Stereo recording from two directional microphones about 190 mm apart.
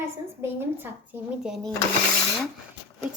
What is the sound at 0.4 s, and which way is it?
Speech, 10° right (ahead or behind).